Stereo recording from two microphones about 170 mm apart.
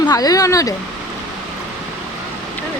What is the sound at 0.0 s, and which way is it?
Speech, 20° left (ahead or behind).